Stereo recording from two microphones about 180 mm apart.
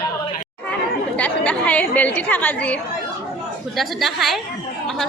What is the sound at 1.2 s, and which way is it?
A woman's voice, 10° left (ahead or behind).